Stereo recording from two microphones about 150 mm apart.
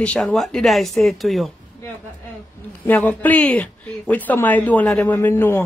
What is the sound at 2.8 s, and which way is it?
A woman's voice, 10° left (ahead or behind).